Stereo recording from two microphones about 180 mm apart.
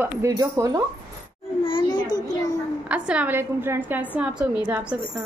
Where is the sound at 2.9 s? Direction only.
5° right (ahead or behind).